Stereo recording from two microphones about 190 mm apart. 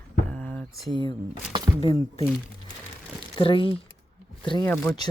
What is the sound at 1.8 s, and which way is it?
Speech, 30° left (ahead or behind).